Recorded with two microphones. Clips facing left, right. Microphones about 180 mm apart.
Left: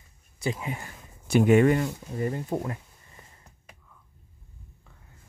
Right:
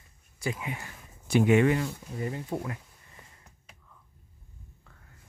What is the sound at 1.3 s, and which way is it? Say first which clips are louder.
Speech: left 3 dB; 45° left (ahead or behind).